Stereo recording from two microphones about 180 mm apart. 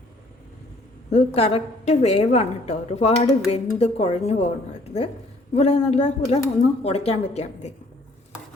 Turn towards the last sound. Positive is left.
turn(degrees=40)  # may be behind; listen again after turning